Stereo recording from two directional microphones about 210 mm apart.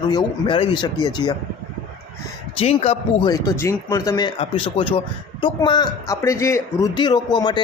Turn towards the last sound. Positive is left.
turn(degrees=20)  # may be behind; listen again after turning